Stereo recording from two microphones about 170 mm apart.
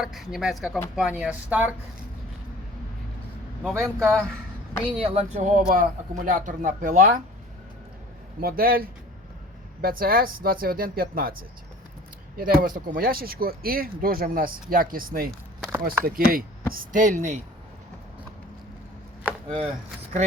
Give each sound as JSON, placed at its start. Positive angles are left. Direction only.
{"t": 0.0, "sound": "speech", "side_deg": 0}
{"t": 3.6, "sound": "speech", "side_deg": 0}
{"t": 4.9, "sound": "speech", "side_deg": -35}
{"t": 8.4, "sound": "speech", "side_deg": -60}
{"t": 19.5, "sound": "wood", "side_deg": -35}